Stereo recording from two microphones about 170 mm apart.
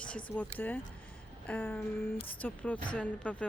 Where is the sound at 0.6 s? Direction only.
10° left (ahead or behind).